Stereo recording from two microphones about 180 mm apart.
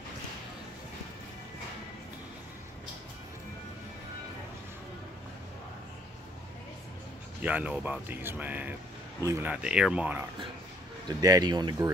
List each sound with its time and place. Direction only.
7.4 s speech: 5° right (ahead or behind)
11.1 s speech: 20° right (ahead or behind)